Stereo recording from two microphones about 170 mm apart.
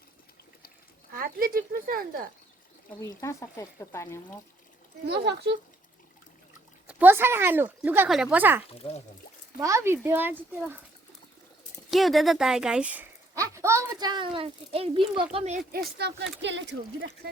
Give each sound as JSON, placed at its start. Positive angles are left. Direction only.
{"t": 1.1, "sound": "speech", "side_deg": -60}
{"t": 3.0, "sound": "speech", "side_deg": 15}
{"t": 5.0, "sound": "speech", "side_deg": -75}
{"t": 6.8, "sound": "speech", "side_deg": -10}
{"t": 8.8, "sound": "speech", "side_deg": 35}
{"t": 9.6, "sound": "speech", "side_deg": -20}
{"t": 11.9, "sound": "speech", "side_deg": 0}
{"t": 15.7, "sound": "speech", "side_deg": -70}